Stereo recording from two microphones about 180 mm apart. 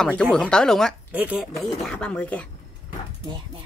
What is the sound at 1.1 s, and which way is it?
Speech, 5° right (ahead or behind).